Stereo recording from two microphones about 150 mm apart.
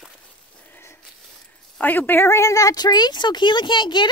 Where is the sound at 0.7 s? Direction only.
15° left (ahead or behind).